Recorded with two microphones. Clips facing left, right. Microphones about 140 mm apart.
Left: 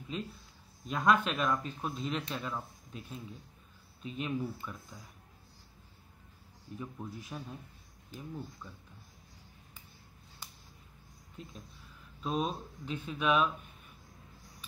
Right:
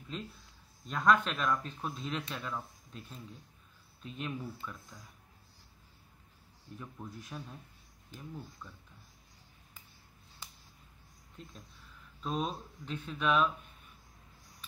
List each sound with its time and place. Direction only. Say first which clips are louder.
0.1 s speech: left 3 dB; 5° left (ahead or behind)
6.8 s speech: left 4 dB; 5° left (ahead or behind)
12.2 s speech: left 2 dB; 5° left (ahead or behind)